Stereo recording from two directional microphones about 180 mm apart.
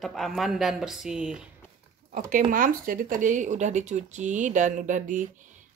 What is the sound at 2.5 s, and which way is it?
Speech, 50° right (ahead or behind).